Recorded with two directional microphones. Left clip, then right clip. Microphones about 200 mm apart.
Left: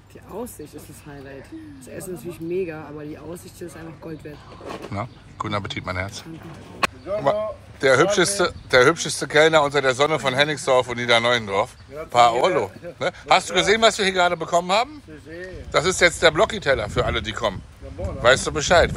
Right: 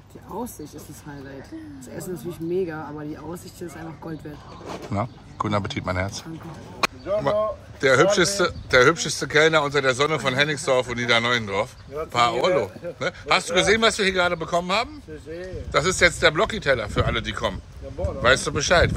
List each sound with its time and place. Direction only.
2.5 s a man's voice: 10° right (ahead or behind)
4.9 s a man's voice: 15° right (ahead or behind)
7.1 s a man's voice: 10° right (ahead or behind)